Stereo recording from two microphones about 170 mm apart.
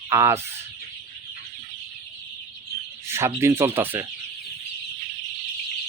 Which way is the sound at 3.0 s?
15° right (ahead or behind).